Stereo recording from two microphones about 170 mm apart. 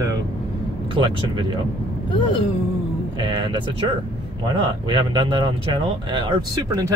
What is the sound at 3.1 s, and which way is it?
Speech, 25° right (ahead or behind).